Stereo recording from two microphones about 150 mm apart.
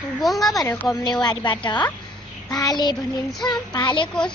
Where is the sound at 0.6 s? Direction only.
15° left (ahead or behind).